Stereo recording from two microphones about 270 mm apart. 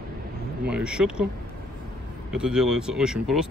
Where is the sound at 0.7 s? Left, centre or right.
Centre.